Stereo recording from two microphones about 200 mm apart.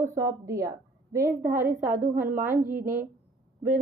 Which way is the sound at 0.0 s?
15° right (ahead or behind).